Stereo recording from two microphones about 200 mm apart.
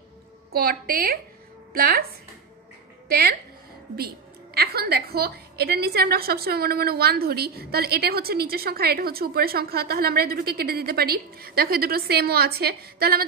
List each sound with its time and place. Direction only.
0.5 s a woman's voice: 50° right (ahead or behind)
3.1 s a woman's voice: 50° right (ahead or behind)
4.6 s a woman's voice: 50° right (ahead or behind)